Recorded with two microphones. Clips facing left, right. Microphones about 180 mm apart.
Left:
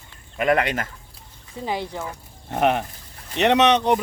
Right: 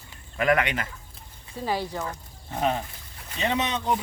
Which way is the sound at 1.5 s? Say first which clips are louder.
Left 1 dB; 20° left (ahead or behind).